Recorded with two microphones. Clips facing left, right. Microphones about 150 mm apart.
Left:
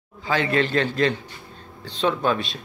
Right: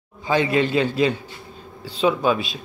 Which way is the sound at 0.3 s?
15° right (ahead or behind).